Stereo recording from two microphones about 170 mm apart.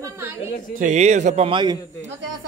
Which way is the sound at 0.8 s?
45° right (ahead or behind).